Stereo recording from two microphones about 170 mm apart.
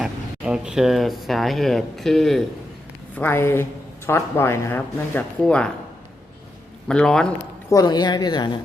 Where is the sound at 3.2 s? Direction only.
15° left (ahead or behind).